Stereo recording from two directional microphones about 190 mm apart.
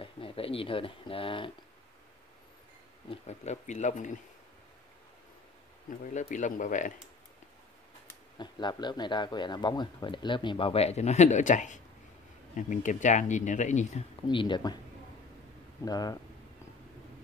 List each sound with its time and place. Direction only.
0.0 s speech: 30° left (ahead or behind)
3.1 s speech: 35° left (ahead or behind)
6.1 s speech: 40° left (ahead or behind)
8.4 s speech: 25° left (ahead or behind); by 14.0 s 40° left (ahead or behind)
14.2 s speech: 25° left (ahead or behind)
15.8 s speech: 20° left (ahead or behind)